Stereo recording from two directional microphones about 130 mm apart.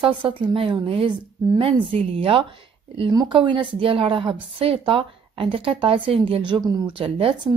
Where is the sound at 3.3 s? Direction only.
40° right (ahead or behind).